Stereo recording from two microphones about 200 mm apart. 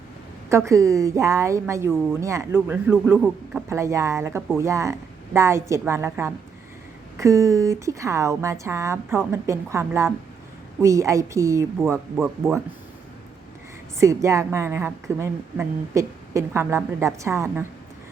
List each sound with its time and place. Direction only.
0.5 s a woman's voice: 15° right (ahead or behind)
12.1 s speech: 5° right (ahead or behind)
14.0 s a woman's voice: 15° right (ahead or behind)